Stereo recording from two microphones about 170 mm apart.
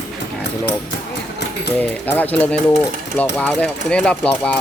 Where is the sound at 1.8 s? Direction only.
10° left (ahead or behind).